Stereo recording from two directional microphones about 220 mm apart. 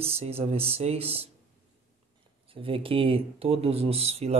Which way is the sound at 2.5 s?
25° right (ahead or behind).